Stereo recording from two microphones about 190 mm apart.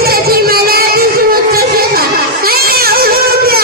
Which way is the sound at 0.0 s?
55° right (ahead or behind).